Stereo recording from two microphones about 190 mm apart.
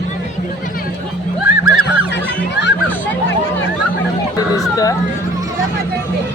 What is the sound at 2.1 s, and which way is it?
Music, 65° left (ahead or behind).